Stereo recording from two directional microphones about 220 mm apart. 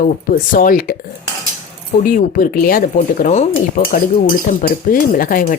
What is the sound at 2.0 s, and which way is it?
Speech, 40° left (ahead or behind).